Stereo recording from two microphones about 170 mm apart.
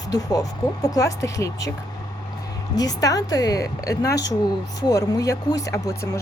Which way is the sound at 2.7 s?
20° left (ahead or behind).